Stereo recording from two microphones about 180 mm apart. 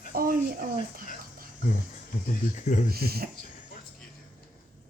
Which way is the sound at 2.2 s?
45° left (ahead or behind).